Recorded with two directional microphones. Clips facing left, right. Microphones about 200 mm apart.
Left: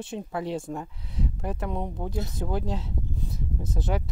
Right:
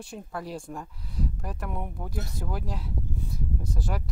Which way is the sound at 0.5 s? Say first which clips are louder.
Left 5 dB; 25° left (ahead or behind).